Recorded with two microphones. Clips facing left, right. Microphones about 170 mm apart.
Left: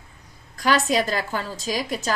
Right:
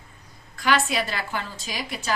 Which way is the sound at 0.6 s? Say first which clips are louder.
Left 3 dB; 40° left (ahead or behind).